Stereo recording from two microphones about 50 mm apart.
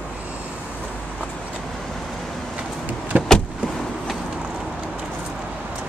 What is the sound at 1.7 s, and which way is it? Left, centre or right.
Vehicle, centre.